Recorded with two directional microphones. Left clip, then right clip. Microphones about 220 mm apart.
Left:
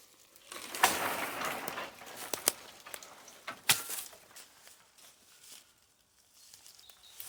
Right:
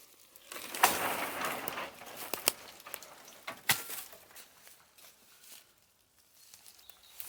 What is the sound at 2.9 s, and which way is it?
Frying, 25° right (ahead or behind).